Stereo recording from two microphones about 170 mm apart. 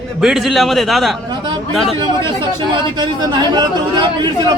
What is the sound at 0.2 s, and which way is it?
A man's voice, centre (ahead or behind).